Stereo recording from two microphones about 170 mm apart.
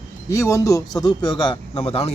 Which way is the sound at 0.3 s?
15° left (ahead or behind).